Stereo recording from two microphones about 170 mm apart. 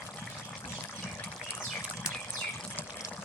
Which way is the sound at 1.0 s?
10° left (ahead or behind).